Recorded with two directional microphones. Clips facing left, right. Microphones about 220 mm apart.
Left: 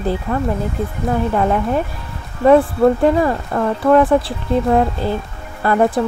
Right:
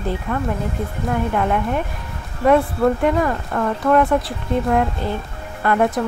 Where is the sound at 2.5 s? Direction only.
30° left (ahead or behind).